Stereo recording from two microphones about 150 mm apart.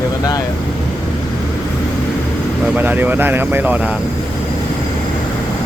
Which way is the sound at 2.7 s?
10° right (ahead or behind).